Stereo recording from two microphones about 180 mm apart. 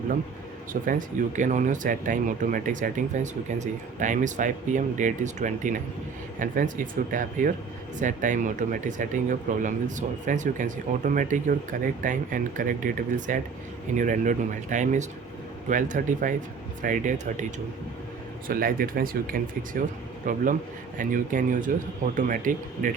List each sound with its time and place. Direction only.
0.7 s speech: 50° right (ahead or behind)
18.4 s speech: 50° right (ahead or behind)